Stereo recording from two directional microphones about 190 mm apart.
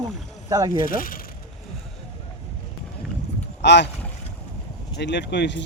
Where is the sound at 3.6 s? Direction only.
65° left (ahead or behind).